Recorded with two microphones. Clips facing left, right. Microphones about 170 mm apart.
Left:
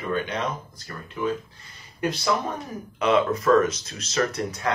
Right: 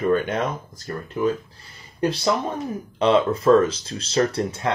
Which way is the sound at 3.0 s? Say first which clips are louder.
Right 3 dB; 30° right (ahead or behind).